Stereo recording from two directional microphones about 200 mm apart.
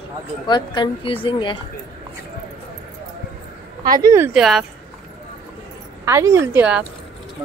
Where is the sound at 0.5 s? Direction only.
25° left (ahead or behind).